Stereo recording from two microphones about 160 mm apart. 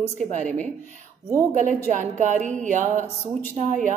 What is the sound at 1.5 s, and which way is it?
A woman's voice, 50° right (ahead or behind).